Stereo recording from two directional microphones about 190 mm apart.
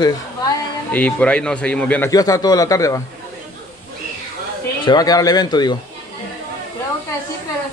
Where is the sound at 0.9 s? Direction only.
5° left (ahead or behind).